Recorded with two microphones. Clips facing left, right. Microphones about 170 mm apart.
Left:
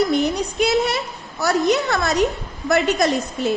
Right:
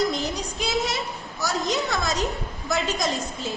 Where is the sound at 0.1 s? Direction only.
60° left (ahead or behind).